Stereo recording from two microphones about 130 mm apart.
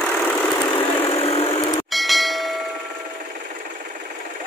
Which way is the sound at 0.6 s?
35° left (ahead or behind).